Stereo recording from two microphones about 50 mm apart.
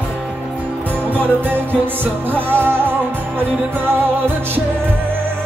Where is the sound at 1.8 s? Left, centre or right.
Right.